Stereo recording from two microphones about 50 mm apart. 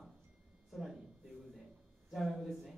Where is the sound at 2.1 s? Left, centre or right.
Centre.